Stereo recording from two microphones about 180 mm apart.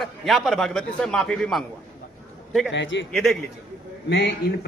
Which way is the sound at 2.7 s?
85° left.